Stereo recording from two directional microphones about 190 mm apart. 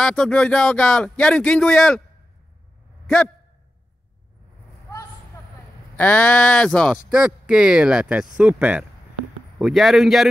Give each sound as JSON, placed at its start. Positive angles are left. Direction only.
{"t": 0.0, "sound": "speech", "side_deg": 5}
{"t": 5.9, "sound": "speech", "side_deg": 10}